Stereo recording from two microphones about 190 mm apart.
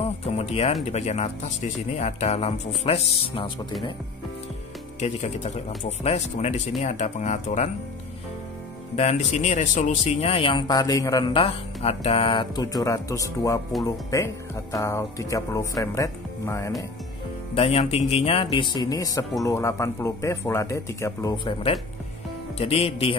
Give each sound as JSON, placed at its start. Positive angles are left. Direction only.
{"t": 0.2, "sound": "music", "side_deg": 35}
{"t": 0.8, "sound": "speech", "side_deg": 35}
{"t": 5.0, "sound": "speech", "side_deg": 35}
{"t": 8.9, "sound": "speech", "side_deg": 35}
{"t": 17.6, "sound": "speech", "side_deg": 30}
{"t": 22.6, "sound": "speech", "side_deg": 30}